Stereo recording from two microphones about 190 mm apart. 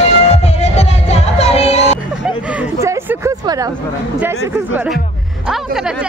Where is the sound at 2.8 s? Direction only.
15° right (ahead or behind).